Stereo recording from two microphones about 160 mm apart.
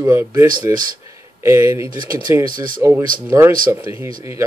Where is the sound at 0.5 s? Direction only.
60° right (ahead or behind).